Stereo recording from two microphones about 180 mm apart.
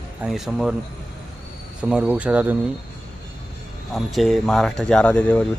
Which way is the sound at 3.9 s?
Centre (ahead or behind).